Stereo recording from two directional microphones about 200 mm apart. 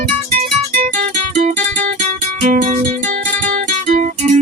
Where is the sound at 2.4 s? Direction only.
35° right (ahead or behind).